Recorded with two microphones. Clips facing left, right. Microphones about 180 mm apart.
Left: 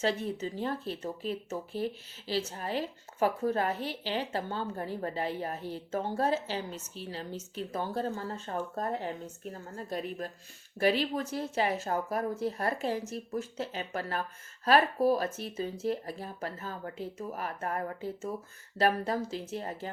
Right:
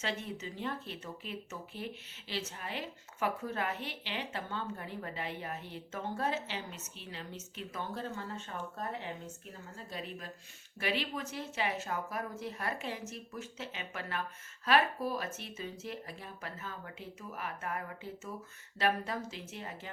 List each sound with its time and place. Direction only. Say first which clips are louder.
0.0 s speech: left 8 dB; 35° left (ahead or behind)